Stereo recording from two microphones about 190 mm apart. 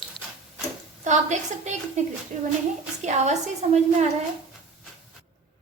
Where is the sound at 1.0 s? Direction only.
40° right (ahead or behind).